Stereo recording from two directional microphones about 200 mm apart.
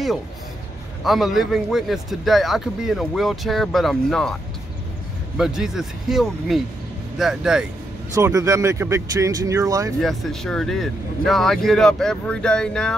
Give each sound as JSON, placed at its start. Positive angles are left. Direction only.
{"t": 1.0, "sound": "a man's voice", "side_deg": 0}
{"t": 5.4, "sound": "a man's voice", "side_deg": 0}
{"t": 8.1, "sound": "speech", "side_deg": -15}
{"t": 10.0, "sound": "a man's voice", "side_deg": 0}